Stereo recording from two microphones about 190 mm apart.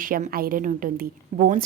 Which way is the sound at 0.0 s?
45° right (ahead or behind).